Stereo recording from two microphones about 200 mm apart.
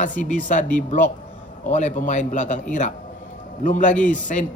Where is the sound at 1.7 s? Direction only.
35° left (ahead or behind).